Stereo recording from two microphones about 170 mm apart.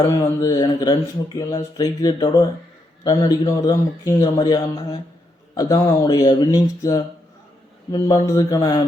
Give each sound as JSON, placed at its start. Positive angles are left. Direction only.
{"t": 0.1, "sound": "a man's voice", "side_deg": 15}